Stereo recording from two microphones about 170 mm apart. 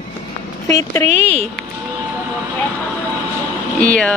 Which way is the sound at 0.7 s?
20° left (ahead or behind).